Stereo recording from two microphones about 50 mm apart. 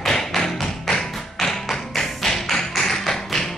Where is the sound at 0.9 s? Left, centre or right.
Centre.